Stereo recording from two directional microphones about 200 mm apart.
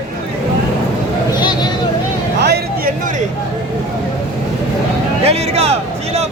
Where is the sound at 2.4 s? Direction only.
50° right (ahead or behind).